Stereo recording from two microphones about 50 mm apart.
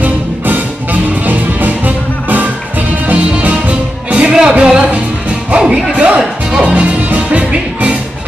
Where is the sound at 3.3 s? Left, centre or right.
Right.